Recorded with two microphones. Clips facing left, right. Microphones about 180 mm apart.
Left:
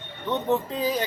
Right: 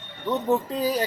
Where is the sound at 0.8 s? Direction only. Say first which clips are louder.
Right 1 dB; 35° right (ahead or behind).